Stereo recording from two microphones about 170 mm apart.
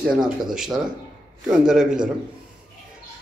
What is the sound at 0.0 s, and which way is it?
Speech, 5° right (ahead or behind).